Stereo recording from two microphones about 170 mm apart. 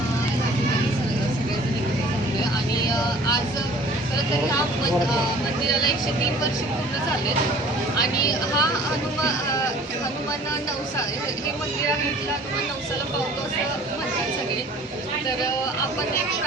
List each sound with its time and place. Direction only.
7.9 s speech: 20° left (ahead or behind)